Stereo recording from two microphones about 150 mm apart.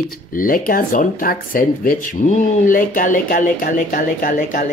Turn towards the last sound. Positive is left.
turn(degrees=60)  # may be behind; listen again after turning